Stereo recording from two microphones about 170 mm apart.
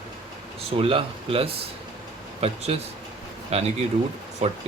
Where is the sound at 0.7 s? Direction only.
30° right (ahead or behind).